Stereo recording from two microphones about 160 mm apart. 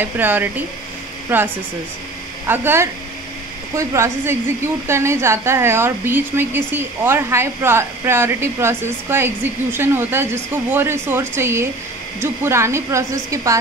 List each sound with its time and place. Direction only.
0.0 s a woman's voice: 10° right (ahead or behind)